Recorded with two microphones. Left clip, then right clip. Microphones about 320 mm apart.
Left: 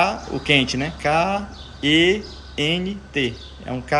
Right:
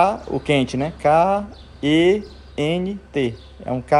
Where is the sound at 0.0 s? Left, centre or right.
Centre.